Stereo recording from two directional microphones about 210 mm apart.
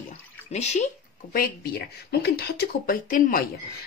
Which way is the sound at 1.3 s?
45° left (ahead or behind).